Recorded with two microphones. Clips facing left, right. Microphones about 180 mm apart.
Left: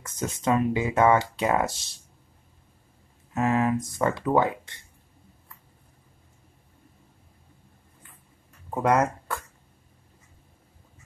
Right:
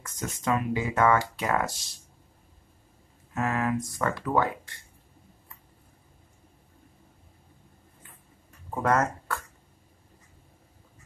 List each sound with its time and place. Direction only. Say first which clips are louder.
0.0 s speech: left 4 dB; 20° left (ahead or behind)
3.3 s speech: left 4 dB; 20° left (ahead or behind)
8.6 s speech: left 3 dB; 15° left (ahead or behind)